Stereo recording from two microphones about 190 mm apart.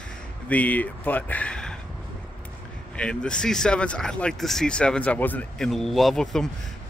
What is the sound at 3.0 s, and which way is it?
Speech, 5° left (ahead or behind).